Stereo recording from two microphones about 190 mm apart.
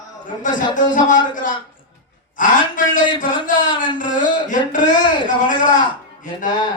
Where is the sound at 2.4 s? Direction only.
45° left (ahead or behind).